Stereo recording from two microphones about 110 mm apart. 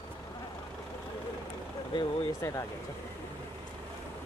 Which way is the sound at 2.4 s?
25° left (ahead or behind).